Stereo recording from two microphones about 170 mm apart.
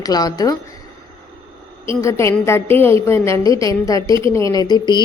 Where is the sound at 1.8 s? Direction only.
15° left (ahead or behind).